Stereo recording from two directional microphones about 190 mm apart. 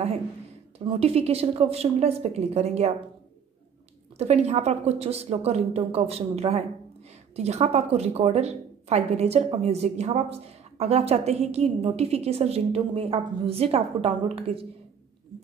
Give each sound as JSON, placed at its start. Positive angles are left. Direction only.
{"t": 0.7, "sound": "a woman's voice", "side_deg": -30}
{"t": 4.2, "sound": "a woman's voice", "side_deg": -35}